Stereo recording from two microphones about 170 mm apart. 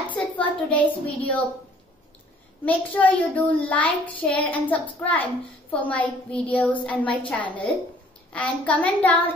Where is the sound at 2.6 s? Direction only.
10° left (ahead or behind).